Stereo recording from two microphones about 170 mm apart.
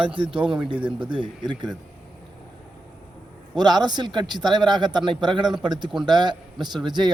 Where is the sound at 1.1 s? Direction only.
25° right (ahead or behind).